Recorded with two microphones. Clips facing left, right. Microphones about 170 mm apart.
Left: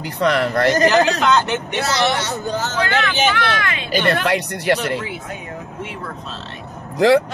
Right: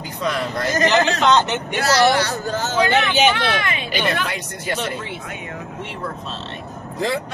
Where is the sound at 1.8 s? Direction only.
20° left (ahead or behind).